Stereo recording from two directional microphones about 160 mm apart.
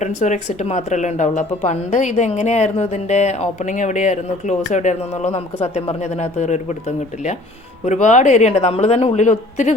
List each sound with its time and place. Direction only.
0.0 s speech: 50° left (ahead or behind)